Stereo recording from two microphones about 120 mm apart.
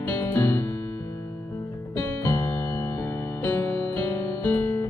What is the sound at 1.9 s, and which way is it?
Music, 15° left (ahead or behind).